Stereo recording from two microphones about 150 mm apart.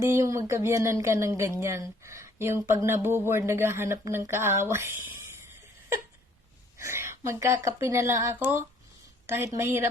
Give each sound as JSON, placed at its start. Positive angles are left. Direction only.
{"t": 0.0, "sound": "speech", "side_deg": -20}
{"t": 6.7, "sound": "a sound", "side_deg": -15}
{"t": 7.8, "sound": "speech", "side_deg": -20}